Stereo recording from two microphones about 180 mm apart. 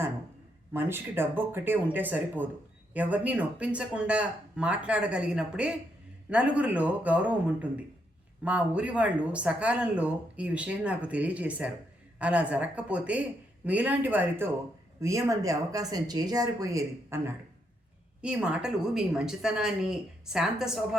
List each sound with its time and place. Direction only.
0.7 s speech: 10° right (ahead or behind)
18.2 s speech: 5° right (ahead or behind)